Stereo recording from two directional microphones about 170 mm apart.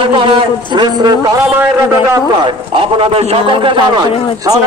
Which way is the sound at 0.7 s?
25° right (ahead or behind).